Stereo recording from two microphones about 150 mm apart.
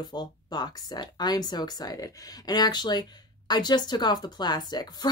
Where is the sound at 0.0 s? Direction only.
25° left (ahead or behind).